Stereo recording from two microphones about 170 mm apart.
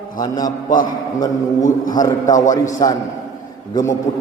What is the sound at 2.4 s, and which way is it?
Speech, 45° left (ahead or behind).